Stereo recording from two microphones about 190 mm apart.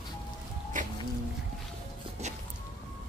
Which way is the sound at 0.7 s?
45° right (ahead or behind).